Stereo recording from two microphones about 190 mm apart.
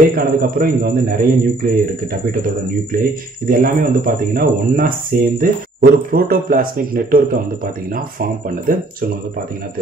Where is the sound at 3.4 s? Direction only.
50° right (ahead or behind).